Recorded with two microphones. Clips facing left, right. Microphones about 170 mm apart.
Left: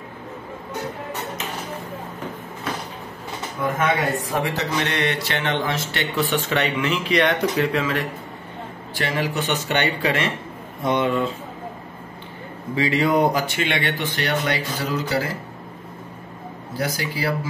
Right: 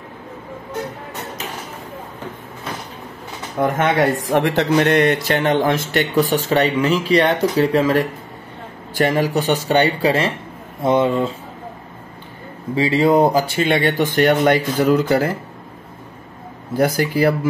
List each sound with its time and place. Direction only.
3.5 s speech: 90° right
4.3 s speech: 70° right (ahead or behind)
4.7 s speech: 45° right (ahead or behind)
8.9 s speech: 45° right (ahead or behind); by 11.3 s 30° right (ahead or behind)
12.7 s speech: 30° right (ahead or behind); by 15.3 s 55° right (ahead or behind)
16.7 s speech: 55° right (ahead or behind)